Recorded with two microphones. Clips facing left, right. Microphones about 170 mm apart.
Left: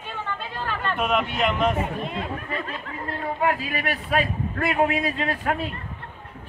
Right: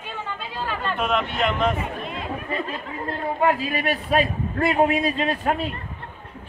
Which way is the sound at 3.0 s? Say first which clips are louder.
Right 3 dB; 30° right (ahead or behind).